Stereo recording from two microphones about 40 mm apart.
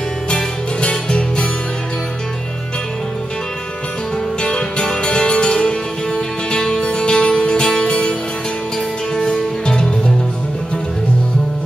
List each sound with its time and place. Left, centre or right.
0.3 s music: left
4.4 s music: left